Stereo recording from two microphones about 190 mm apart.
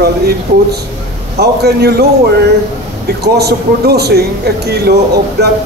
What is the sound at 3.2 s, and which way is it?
Speech, 55° right (ahead or behind).